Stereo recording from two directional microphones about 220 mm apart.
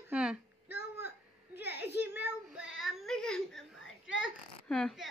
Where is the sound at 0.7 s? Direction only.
50° left (ahead or behind).